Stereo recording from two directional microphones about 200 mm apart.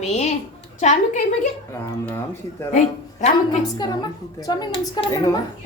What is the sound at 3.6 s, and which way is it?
Speech, 20° left (ahead or behind).